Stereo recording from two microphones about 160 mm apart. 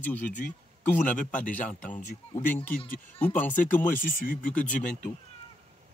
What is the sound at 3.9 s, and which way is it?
Speech, 60° left (ahead or behind).